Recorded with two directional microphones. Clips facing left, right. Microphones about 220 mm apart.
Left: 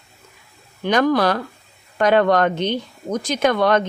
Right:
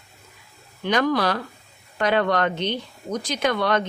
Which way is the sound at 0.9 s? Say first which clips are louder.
Left 4 dB; 45° left (ahead or behind).